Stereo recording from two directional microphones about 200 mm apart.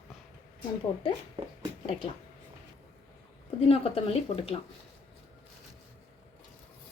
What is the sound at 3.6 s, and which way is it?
Speech, 30° left (ahead or behind).